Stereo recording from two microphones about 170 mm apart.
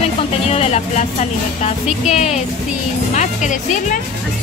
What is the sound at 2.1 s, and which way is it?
Speech, 40° left (ahead or behind).